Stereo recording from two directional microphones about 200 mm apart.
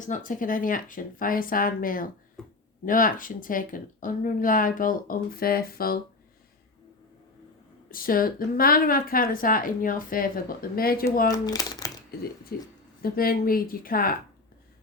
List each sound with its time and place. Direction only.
0.0 s speech: 40° left (ahead or behind)
7.9 s speech: 45° left (ahead or behind)
11.3 s speech: 20° left (ahead or behind)
12.5 s speech: 50° left (ahead or behind)